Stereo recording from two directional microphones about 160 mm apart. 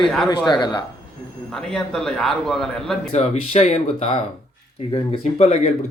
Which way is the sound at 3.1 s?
40° left (ahead or behind).